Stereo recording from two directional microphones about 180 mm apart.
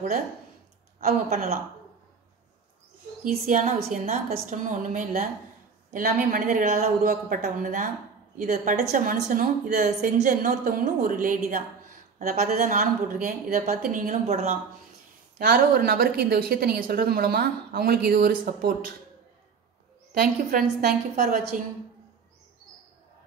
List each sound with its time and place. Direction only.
0.9 s a woman's voice: 40° right (ahead or behind)
3.3 s a woman's voice: 45° right (ahead or behind)
15.3 s a woman's voice: 55° right (ahead or behind)
20.8 s a woman's voice: 55° right (ahead or behind)